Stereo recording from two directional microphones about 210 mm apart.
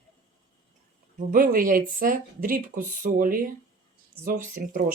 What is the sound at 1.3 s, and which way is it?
Speech, 40° right (ahead or behind).